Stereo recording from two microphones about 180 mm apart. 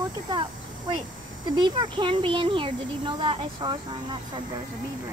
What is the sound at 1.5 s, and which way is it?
A child's voice, 25° right (ahead or behind).